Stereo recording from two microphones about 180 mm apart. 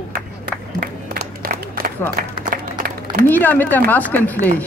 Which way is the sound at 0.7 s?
55° right (ahead or behind).